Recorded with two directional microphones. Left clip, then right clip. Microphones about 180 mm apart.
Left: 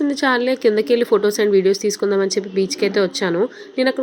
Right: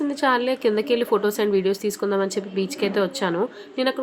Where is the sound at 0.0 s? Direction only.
20° left (ahead or behind).